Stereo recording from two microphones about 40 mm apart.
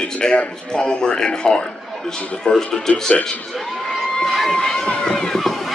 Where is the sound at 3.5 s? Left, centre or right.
Centre.